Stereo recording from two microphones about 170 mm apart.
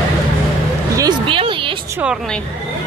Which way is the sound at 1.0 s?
25° right (ahead or behind).